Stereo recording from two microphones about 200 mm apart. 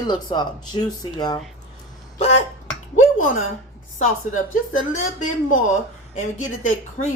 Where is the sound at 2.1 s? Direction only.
35° left (ahead or behind).